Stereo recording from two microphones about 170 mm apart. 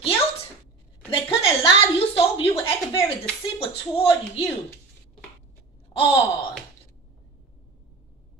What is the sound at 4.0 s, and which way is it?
Speech, 35° left (ahead or behind).